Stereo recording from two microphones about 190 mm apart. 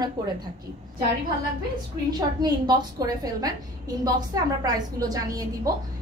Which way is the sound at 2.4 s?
20° right (ahead or behind).